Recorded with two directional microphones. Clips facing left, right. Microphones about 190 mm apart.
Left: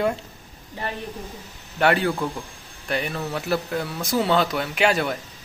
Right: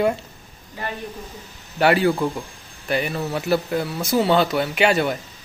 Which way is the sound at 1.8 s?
5° right (ahead or behind).